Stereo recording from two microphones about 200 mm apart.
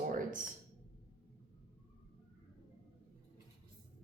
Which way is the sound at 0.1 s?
40° right (ahead or behind).